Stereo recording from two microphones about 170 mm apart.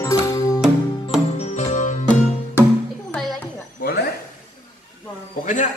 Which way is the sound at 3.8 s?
65° left (ahead or behind).